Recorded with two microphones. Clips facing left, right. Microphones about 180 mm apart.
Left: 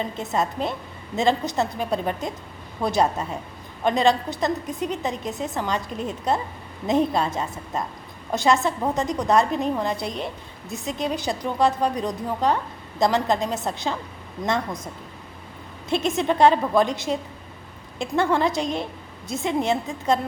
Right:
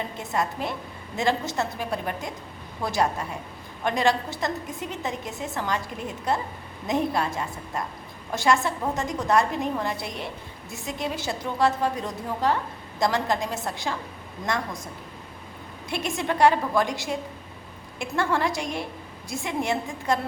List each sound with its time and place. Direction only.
0.2 s a woman's voice: 20° left (ahead or behind)
15.9 s a woman's voice: 20° left (ahead or behind)